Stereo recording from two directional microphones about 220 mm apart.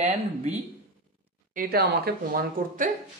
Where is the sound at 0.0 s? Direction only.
30° right (ahead or behind).